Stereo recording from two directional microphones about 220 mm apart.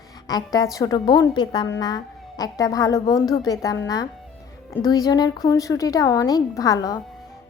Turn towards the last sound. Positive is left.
turn(degrees=15)  # may be behind; listen again after turning